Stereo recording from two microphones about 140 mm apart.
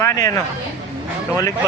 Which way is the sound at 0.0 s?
20° left (ahead or behind).